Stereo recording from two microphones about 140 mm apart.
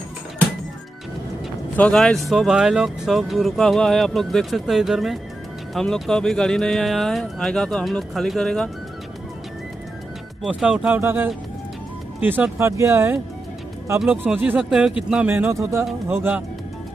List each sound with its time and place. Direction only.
1.8 s speech: 5° left (ahead or behind)
10.4 s speech: 5° right (ahead or behind)